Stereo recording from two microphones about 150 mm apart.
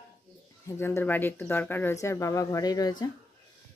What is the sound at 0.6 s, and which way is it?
Speech, 15° left (ahead or behind).